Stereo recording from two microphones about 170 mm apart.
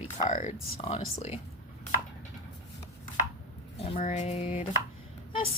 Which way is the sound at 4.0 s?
40° left (ahead or behind).